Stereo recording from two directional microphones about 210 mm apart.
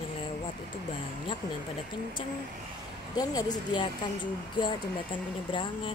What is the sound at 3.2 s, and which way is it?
Speech, 20° left (ahead or behind).